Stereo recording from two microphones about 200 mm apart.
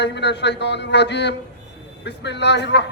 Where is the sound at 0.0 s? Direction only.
60° left (ahead or behind).